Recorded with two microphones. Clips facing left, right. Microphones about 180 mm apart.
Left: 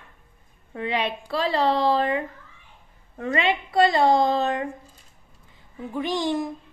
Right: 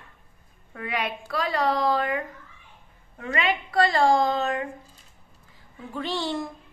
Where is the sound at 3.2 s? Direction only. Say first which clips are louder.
Left 3 dB; 25° left (ahead or behind).